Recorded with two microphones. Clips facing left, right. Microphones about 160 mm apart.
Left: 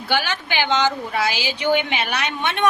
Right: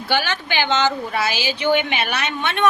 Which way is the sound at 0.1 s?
15° left (ahead or behind).